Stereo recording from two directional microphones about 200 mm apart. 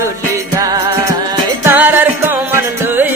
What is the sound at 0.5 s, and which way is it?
Music, 20° right (ahead or behind).